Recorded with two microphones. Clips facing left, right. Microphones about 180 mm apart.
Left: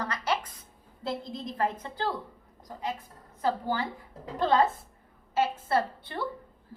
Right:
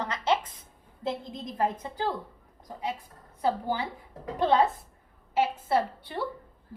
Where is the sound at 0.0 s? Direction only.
25° right (ahead or behind).